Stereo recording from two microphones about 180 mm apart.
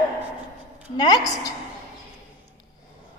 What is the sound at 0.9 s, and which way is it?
Speech, 20° left (ahead or behind).